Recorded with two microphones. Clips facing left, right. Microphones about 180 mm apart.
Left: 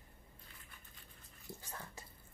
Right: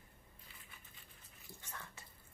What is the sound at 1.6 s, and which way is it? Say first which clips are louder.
Bathtub: left 3 dB; 35° left (ahead or behind).